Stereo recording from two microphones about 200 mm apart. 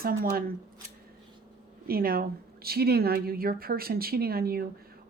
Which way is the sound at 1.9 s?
50° right (ahead or behind).